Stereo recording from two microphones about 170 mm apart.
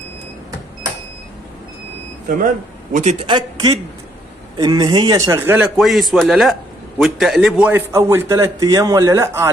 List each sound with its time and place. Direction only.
2.2 s a man's voice: 50° right (ahead or behind)
3.3 s a man's voice: 30° right (ahead or behind)
5.8 s a man's voice: centre (ahead or behind)